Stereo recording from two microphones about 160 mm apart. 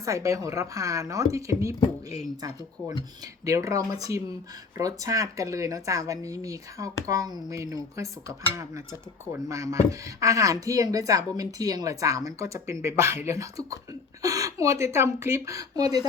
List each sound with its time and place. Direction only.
0.0 s speech: 20° right (ahead or behind)
3.4 s speech: 20° right (ahead or behind)
9.3 s speech: 20° right (ahead or behind)